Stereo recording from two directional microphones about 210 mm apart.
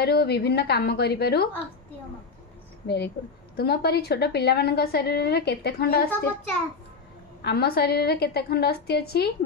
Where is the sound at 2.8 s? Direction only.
50° left (ahead or behind).